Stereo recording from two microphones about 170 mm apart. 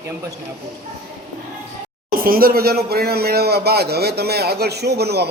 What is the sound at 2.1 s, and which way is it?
A man's voice, 60° right (ahead or behind).